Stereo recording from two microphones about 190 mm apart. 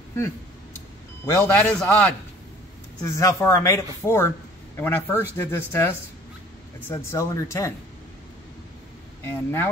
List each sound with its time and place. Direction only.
1.2 s speech: 15° left (ahead or behind)
9.2 s speech: 10° left (ahead or behind)